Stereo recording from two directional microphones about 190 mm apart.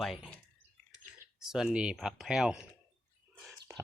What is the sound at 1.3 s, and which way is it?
Speech, 5° right (ahead or behind).